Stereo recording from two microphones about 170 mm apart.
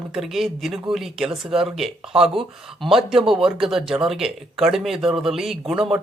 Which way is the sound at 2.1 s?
35° right (ahead or behind).